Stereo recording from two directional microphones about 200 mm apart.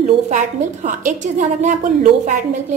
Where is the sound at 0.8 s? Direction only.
40° right (ahead or behind).